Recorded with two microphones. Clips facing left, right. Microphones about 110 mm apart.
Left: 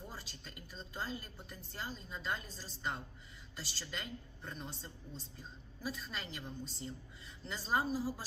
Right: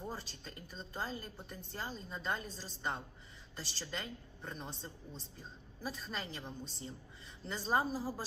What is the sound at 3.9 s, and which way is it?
Speech, 35° right (ahead or behind).